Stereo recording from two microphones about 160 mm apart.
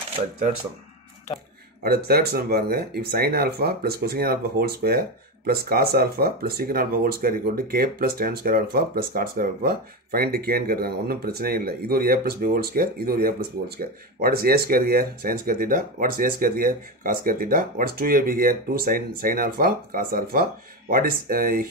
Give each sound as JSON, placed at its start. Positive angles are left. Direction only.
{"t": 1.8, "sound": "speech", "side_deg": -75}